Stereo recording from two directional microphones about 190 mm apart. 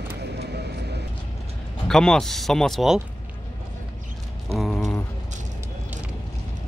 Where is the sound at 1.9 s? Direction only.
5° left (ahead or behind).